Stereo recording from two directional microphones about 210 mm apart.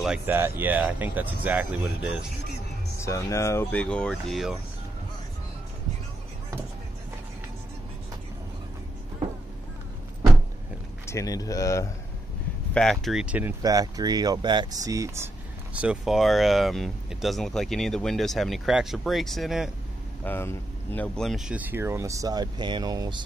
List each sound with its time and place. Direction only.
0.0 s speech: 5° right (ahead or behind)
3.1 s speech: 15° left (ahead or behind)
11.1 s speech: 15° left (ahead or behind)
12.7 s speech: centre (ahead or behind)
20.2 s speech: 10° left (ahead or behind); by 23.2 s 20° right (ahead or behind)